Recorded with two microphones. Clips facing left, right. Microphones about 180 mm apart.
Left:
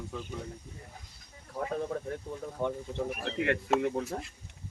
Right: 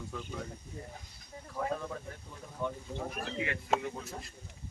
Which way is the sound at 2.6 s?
65° left (ahead or behind).